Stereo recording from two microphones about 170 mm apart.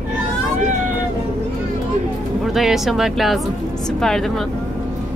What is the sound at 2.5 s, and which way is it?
Speech, centre (ahead or behind).